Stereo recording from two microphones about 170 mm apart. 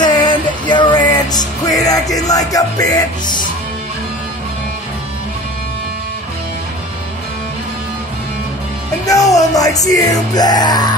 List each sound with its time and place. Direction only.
0.0 s music: 25° left (ahead or behind)
9.0 s music: 20° left (ahead or behind)